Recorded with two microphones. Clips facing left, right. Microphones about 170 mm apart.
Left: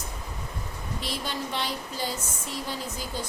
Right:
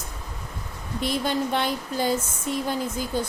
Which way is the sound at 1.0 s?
55° right (ahead or behind).